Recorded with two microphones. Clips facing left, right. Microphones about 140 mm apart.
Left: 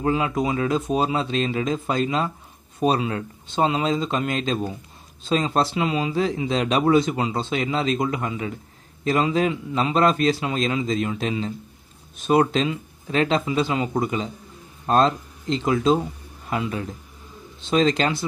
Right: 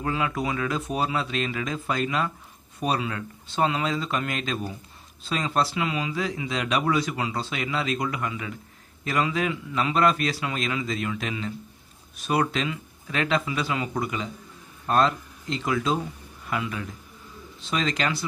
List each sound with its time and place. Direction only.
0.0 s speech: 25° left (ahead or behind)